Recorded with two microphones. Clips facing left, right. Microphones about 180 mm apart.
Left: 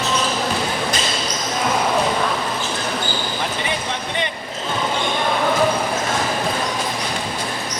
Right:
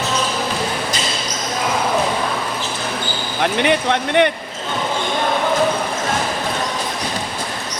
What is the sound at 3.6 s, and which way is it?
Speech, 65° right (ahead or behind).